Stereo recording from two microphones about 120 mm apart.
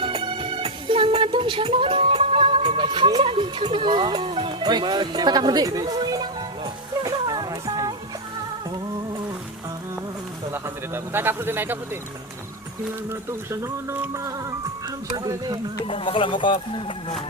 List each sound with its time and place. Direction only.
0.0 s music: 45° right (ahead or behind)
3.3 s speech: 40° right (ahead or behind)
7.0 s a sound: 30° right (ahead or behind)
10.5 s speech: 20° right (ahead or behind)
13.1 s speech: 25° right (ahead or behind)
15.9 s speech: 45° left (ahead or behind)